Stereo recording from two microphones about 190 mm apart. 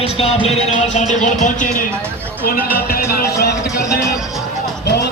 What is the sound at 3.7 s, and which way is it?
Speech, 15° left (ahead or behind).